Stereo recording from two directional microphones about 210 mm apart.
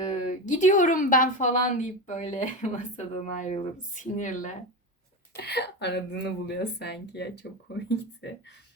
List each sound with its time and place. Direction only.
0.0 s a woman's voice: 30° left (ahead or behind)
5.4 s speech: 50° left (ahead or behind)